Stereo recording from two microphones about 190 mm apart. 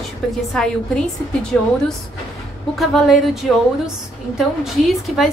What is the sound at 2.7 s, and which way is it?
A woman's voice, centre (ahead or behind).